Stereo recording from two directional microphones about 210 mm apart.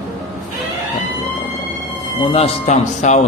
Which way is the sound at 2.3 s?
30° left (ahead or behind).